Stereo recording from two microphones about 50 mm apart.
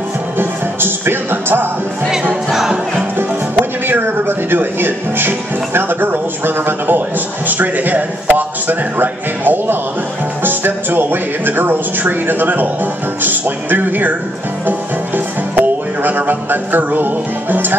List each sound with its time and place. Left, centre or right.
0.4 s music: right
2.5 s music: centre
3.2 s a man's voice: right
14.7 s music: right